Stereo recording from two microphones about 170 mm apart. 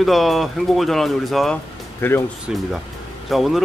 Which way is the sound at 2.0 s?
15° left (ahead or behind).